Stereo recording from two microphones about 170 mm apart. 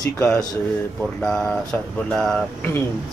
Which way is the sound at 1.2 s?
5° left (ahead or behind).